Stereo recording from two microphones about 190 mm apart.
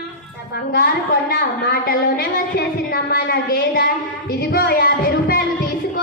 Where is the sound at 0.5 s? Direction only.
55° left (ahead or behind).